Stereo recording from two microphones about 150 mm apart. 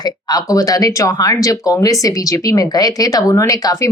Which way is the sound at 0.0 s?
25° left (ahead or behind).